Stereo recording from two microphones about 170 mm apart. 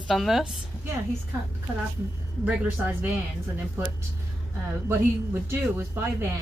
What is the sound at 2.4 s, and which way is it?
Speech, 10° right (ahead or behind).